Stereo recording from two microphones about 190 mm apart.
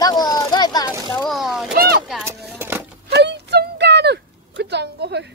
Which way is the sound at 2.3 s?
10° right (ahead or behind).